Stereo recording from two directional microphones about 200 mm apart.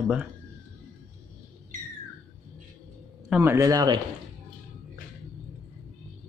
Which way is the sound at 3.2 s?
5° right (ahead or behind).